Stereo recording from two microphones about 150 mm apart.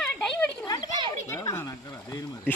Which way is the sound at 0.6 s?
30° left (ahead or behind).